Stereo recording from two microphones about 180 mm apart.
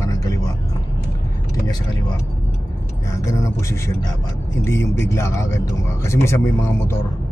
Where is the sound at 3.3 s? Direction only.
15° left (ahead or behind).